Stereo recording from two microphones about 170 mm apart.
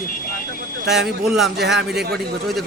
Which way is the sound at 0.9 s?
Centre (ahead or behind).